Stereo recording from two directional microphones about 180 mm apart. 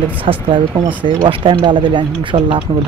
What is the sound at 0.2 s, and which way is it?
Speech, 30° right (ahead or behind).